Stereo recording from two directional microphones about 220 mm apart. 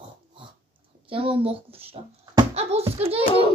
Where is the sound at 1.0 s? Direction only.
25° right (ahead or behind).